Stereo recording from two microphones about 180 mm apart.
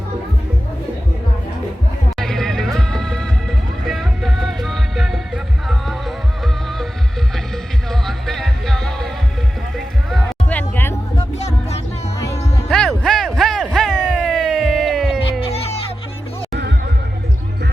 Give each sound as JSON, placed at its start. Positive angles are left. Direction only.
{"t": 2.1, "sound": "music", "side_deg": 0}
{"t": 12.6, "sound": "music", "side_deg": 5}
{"t": 13.0, "sound": "a sound", "side_deg": 5}
{"t": 13.7, "sound": "music", "side_deg": 0}
{"t": 16.5, "sound": "music", "side_deg": -65}